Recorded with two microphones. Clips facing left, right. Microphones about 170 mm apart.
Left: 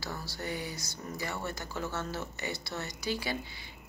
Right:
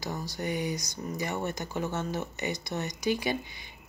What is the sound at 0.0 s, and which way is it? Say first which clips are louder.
Speech: right 5 dB; 15° right (ahead or behind).